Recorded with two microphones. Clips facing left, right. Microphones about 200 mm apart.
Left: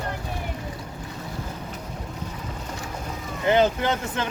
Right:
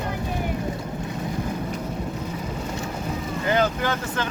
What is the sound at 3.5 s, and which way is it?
Speech, 25° left (ahead or behind).